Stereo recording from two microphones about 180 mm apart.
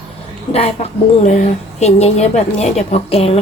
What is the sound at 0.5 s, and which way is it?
A woman's voice, 35° left (ahead or behind).